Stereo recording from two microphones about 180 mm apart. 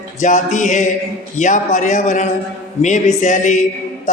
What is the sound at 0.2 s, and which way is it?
Speech, 45° left (ahead or behind).